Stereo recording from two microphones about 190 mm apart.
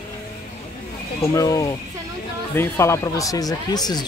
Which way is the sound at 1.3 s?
15° left (ahead or behind).